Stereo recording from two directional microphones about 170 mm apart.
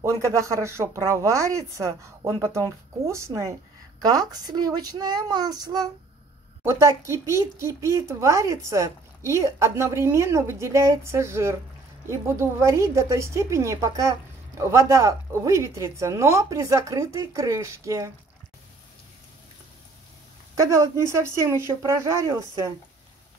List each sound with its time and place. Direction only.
0.0 s speech: 20° right (ahead or behind)
20.5 s speech: 20° right (ahead or behind)